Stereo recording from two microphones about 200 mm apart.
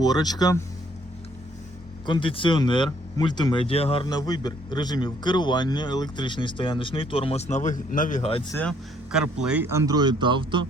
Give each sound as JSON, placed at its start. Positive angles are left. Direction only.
{"t": 0.0, "sound": "speech", "side_deg": 20}
{"t": 2.0, "sound": "speech", "side_deg": 25}
{"t": 9.1, "sound": "speech", "side_deg": -5}